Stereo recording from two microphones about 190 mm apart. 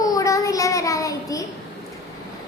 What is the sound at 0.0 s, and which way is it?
Child singing, 20° left (ahead or behind).